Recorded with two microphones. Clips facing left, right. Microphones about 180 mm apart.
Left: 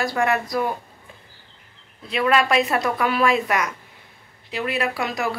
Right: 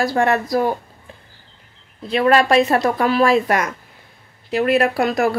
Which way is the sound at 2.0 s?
35° right (ahead or behind).